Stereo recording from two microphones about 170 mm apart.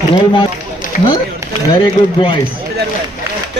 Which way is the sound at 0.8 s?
50° left (ahead or behind).